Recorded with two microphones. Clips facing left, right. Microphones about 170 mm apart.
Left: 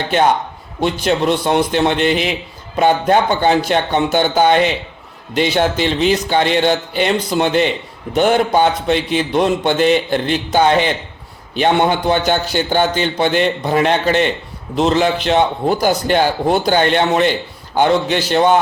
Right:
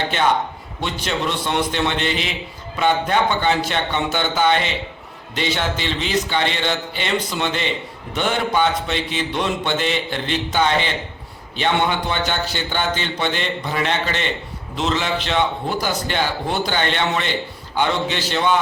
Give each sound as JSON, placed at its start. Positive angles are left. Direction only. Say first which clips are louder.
{"t": 0.8, "sound": "a man's voice", "louder": "left 8 dB", "side_deg": 40}